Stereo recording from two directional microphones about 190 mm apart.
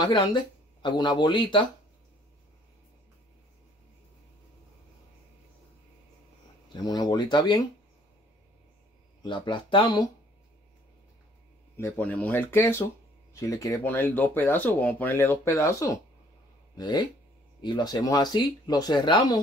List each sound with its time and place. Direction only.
0.0 s speech: 25° left (ahead or behind)
6.7 s speech: 20° left (ahead or behind)
9.2 s speech: 25° left (ahead or behind)
11.7 s speech: 10° left (ahead or behind)